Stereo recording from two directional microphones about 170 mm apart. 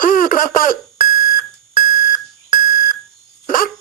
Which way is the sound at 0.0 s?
50° left (ahead or behind).